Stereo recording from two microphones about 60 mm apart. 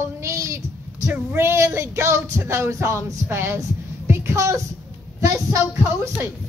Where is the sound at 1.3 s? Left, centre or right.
Right.